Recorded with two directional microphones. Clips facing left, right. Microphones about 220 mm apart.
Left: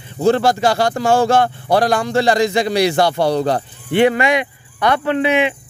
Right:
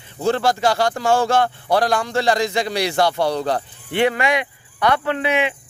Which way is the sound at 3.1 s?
35° left (ahead or behind).